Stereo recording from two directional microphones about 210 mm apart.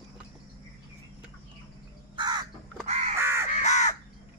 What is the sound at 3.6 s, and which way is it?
Crow, 35° left (ahead or behind).